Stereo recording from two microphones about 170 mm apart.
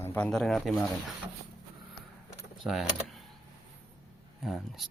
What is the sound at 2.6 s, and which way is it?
Speech, centre (ahead or behind).